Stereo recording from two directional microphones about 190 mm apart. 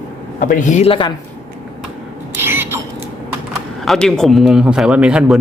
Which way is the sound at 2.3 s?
10° right (ahead or behind).